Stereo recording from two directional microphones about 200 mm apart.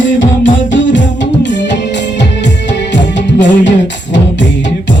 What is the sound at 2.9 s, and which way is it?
Music, 65° left (ahead or behind).